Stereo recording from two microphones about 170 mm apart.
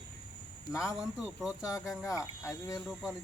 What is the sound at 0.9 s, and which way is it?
Speech, 5° right (ahead or behind).